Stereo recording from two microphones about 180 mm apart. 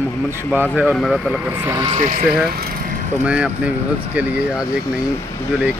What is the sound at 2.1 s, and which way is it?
Speech, 55° right (ahead or behind).